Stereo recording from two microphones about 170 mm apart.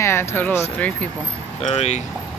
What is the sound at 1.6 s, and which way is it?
Speech, 40° left (ahead or behind).